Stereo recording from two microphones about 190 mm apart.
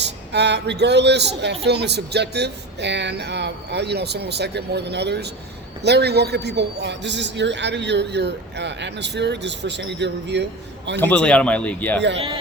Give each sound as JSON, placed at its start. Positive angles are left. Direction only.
{"t": 0.0, "sound": "a man's voice", "side_deg": -65}
{"t": 11.0, "sound": "speech", "side_deg": 5}